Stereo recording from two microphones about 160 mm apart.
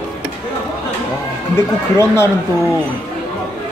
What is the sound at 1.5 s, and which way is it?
Speech, 15° left (ahead or behind).